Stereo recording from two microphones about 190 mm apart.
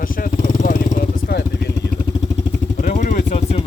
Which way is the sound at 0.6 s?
45° left (ahead or behind).